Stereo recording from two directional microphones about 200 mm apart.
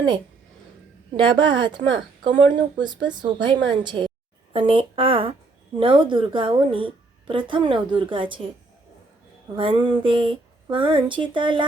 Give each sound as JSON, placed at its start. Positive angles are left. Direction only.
{"t": 1.1, "sound": "a woman's voice", "side_deg": -25}
{"t": 9.6, "sound": "a woman's voice", "side_deg": -25}